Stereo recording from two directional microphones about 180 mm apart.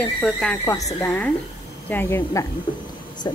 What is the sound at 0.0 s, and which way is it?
A woman's voice, 5° left (ahead or behind).